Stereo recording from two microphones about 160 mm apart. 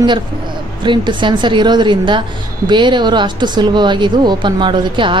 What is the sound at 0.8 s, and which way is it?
A woman's voice, 30° right (ahead or behind).